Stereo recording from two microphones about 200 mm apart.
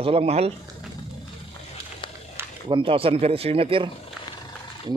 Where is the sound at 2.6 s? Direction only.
25° right (ahead or behind).